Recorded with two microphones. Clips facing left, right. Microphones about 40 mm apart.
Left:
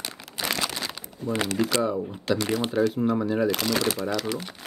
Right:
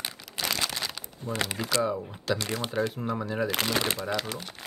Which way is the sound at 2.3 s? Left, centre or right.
Left.